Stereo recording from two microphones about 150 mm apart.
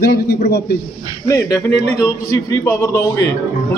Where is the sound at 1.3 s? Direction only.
20° left (ahead or behind).